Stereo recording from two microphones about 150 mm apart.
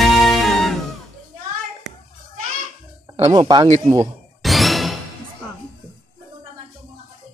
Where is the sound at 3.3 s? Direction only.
30° right (ahead or behind).